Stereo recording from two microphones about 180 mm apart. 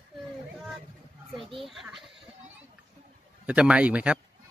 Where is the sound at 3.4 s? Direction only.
5° right (ahead or behind).